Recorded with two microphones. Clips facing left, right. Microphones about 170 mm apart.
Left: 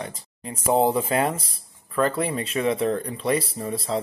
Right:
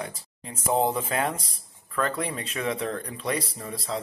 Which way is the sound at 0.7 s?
35° left (ahead or behind).